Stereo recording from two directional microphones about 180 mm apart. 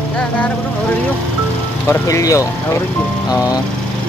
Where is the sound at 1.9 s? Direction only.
15° left (ahead or behind).